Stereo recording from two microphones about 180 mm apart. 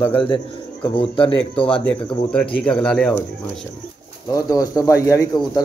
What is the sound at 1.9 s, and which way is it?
Speech, 5° left (ahead or behind).